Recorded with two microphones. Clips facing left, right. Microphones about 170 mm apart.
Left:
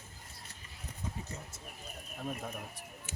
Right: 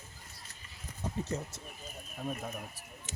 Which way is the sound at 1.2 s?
75° right (ahead or behind).